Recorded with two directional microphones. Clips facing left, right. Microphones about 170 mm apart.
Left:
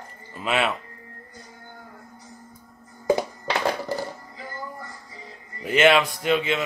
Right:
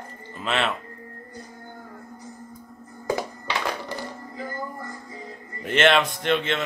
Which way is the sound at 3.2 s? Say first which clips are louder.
Left 3 dB; 35° left (ahead or behind).